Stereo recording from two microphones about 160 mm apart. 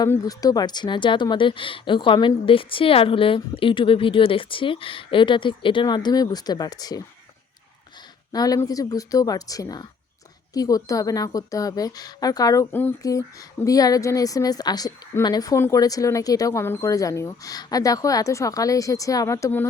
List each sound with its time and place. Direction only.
0.0 s speech: 20° left (ahead or behind)
8.3 s a woman's voice: 25° left (ahead or behind)